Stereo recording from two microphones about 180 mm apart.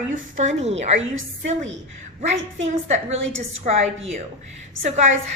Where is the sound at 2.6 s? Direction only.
40° right (ahead or behind).